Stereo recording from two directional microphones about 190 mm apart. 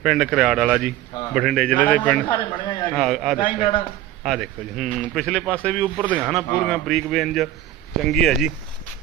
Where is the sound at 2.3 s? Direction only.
25° left (ahead or behind).